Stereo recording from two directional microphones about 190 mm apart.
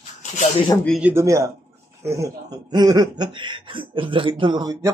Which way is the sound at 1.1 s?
15° right (ahead or behind).